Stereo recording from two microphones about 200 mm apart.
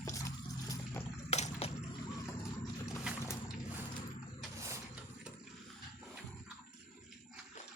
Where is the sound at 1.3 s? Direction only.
30° left (ahead or behind).